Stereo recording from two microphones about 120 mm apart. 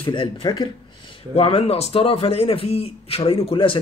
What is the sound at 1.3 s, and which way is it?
Speech, 55° left (ahead or behind).